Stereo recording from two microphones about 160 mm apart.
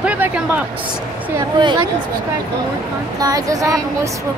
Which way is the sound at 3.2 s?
20° right (ahead or behind).